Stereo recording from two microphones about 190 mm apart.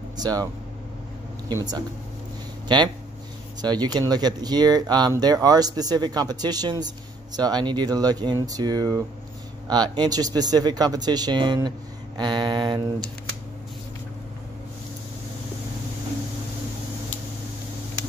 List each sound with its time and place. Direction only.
0.2 s speech: 20° right (ahead or behind)
1.5 s speech: 20° right (ahead or behind)